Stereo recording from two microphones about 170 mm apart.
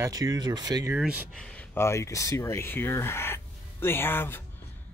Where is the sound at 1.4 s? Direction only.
5° left (ahead or behind).